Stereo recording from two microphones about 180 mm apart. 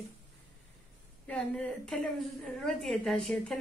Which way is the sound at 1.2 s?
5° left (ahead or behind).